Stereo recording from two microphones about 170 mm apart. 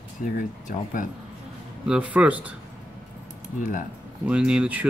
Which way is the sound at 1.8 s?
5° right (ahead or behind).